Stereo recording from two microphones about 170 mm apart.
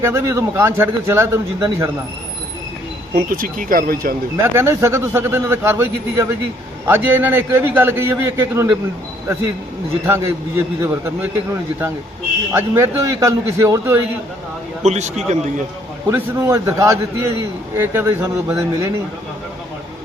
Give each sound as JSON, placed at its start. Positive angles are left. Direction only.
{"t": 0.0, "sound": "a man's voice", "side_deg": -15}
{"t": 3.2, "sound": "speech", "side_deg": -55}
{"t": 4.4, "sound": "a man's voice", "side_deg": -15}
{"t": 10.1, "sound": "a man's voice", "side_deg": -15}
{"t": 12.5, "sound": "a man's voice", "side_deg": -15}
{"t": 14.8, "sound": "a man's voice", "side_deg": -40}
{"t": 16.0, "sound": "a man's voice", "side_deg": -15}